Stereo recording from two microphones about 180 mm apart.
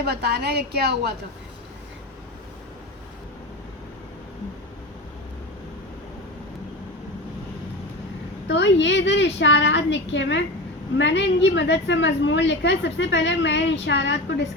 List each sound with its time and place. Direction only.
0.1 s a woman's voice: 60° right (ahead or behind)
8.4 s a woman's voice: 75° left (ahead or behind)